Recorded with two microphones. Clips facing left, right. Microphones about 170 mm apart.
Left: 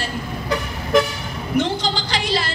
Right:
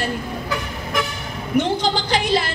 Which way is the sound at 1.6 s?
55° right (ahead or behind).